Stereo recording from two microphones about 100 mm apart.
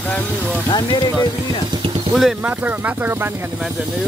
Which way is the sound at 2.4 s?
20° right (ahead or behind).